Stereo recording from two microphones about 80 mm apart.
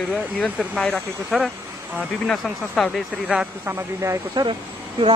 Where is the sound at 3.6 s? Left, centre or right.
Right.